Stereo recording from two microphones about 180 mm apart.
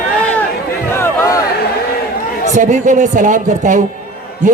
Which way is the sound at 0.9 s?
15° left (ahead or behind).